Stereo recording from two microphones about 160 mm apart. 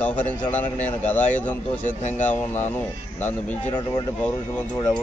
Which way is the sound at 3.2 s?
10° left (ahead or behind).